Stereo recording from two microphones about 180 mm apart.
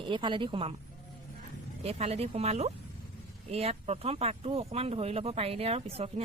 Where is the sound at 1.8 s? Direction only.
35° right (ahead or behind).